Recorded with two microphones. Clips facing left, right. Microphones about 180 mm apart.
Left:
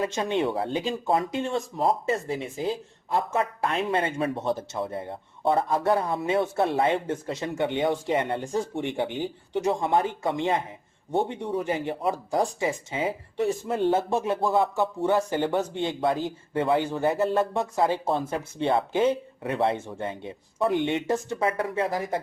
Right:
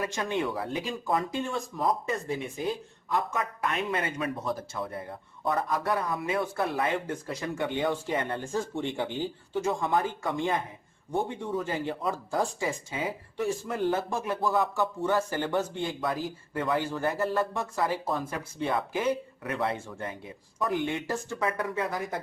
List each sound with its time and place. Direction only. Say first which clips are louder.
0.0 s speech: left 4 dB; 25° left (ahead or behind)